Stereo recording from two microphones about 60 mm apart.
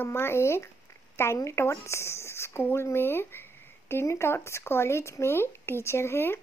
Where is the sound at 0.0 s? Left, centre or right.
Left.